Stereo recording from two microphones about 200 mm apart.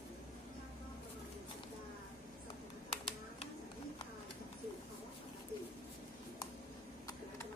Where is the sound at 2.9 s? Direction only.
30° left (ahead or behind).